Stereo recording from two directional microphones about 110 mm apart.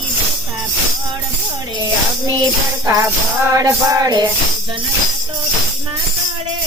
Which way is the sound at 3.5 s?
30° right (ahead or behind).